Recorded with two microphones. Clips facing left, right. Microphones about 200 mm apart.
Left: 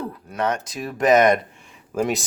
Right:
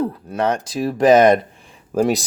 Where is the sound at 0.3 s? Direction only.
30° right (ahead or behind).